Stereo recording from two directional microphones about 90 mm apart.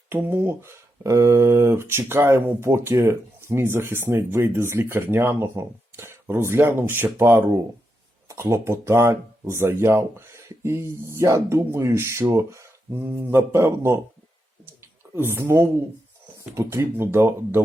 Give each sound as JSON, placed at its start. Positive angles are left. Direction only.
{"t": 0.1, "sound": "speech", "side_deg": -25}
{"t": 13.0, "sound": "speech", "side_deg": -20}
{"t": 15.1, "sound": "speech", "side_deg": -25}